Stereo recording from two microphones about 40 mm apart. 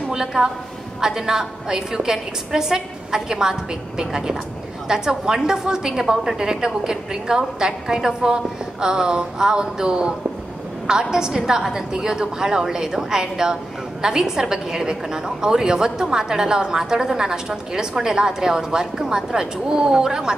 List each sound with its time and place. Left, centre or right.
0.1 s a woman's voice: centre